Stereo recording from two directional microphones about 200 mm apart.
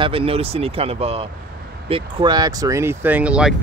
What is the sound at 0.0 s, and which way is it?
Speech, 30° right (ahead or behind).